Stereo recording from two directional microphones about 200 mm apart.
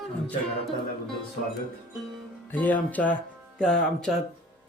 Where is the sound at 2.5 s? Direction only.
10° left (ahead or behind).